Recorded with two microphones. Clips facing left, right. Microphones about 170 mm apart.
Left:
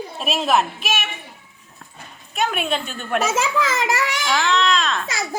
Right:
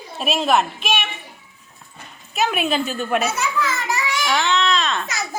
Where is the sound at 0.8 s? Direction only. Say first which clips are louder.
Right 2 dB; 5° left (ahead or behind).